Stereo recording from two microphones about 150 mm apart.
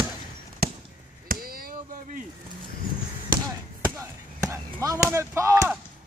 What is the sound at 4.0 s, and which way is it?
Speech, 20° right (ahead or behind).